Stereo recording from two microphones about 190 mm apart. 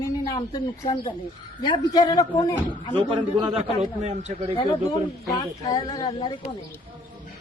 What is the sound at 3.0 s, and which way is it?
A man's voice, 30° right (ahead or behind).